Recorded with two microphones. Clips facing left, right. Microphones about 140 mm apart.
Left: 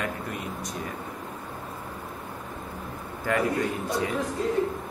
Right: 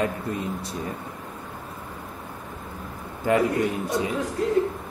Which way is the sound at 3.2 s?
20° right (ahead or behind).